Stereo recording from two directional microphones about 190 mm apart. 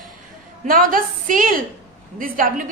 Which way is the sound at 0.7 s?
45° right (ahead or behind).